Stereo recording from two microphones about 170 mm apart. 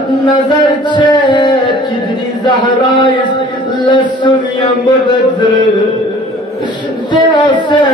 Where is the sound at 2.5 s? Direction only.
25° left (ahead or behind).